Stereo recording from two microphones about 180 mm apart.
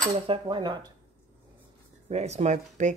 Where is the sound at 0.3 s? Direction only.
25° right (ahead or behind).